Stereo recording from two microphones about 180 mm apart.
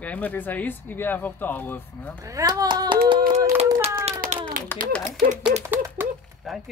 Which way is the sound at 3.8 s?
15° right (ahead or behind).